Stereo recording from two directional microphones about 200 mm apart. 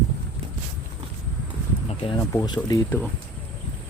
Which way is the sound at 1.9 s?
25° left (ahead or behind).